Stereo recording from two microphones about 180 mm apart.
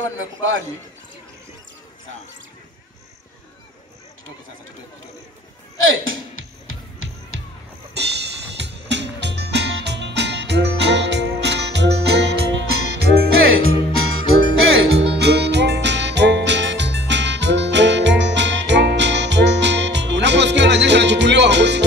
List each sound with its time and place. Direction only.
0.0 s a man's voice: 90° right
5.9 s music: 90° right
7.9 s music: 70° right (ahead or behind)
14.6 s music: 90° right; by 21.8 s 75° right (ahead or behind)